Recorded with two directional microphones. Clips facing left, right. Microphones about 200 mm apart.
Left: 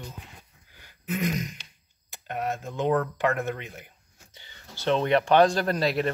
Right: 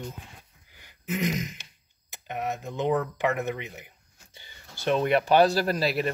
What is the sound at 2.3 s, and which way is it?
Speech, 15° right (ahead or behind).